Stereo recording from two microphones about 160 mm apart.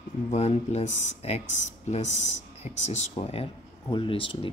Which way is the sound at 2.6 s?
45° left (ahead or behind).